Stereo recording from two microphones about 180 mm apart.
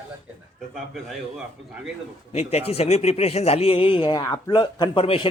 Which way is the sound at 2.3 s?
35° left (ahead or behind).